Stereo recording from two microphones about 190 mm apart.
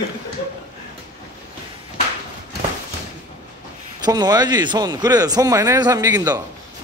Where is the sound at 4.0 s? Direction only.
20° right (ahead or behind).